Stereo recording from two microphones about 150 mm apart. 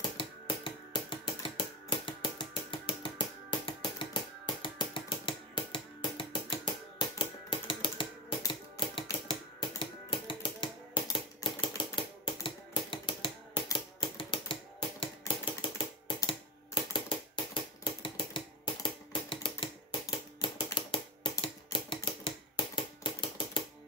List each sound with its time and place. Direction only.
0.2 s a sound: 35° left (ahead or behind)
8.5 s typewriter: 35° left (ahead or behind)
9.0 s typing: 30° left (ahead or behind)
16.1 s typewriter: 35° left (ahead or behind)
17.8 s typing: 35° left (ahead or behind)